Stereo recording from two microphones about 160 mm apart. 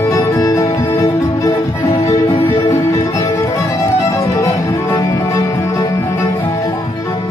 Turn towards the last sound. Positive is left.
turn(degrees=20)  # may be behind; listen again after turning